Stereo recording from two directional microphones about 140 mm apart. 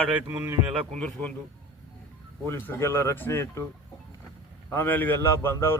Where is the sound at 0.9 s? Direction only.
5° left (ahead or behind).